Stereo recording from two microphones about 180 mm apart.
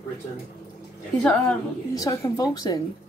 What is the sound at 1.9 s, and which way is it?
Speech, 20° left (ahead or behind).